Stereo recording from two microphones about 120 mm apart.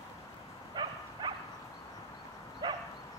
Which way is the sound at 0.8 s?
35° right (ahead or behind).